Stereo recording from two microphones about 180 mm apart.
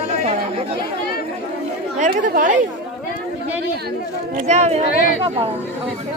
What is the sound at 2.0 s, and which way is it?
Speech, 45° right (ahead or behind).